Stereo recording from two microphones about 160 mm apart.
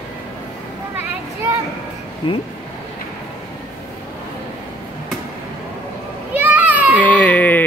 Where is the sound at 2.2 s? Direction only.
30° left (ahead or behind).